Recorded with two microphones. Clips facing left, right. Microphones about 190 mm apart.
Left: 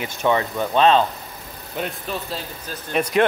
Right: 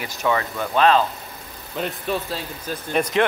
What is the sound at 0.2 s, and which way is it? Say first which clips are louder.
Speech: left 2 dB; 20° left (ahead or behind).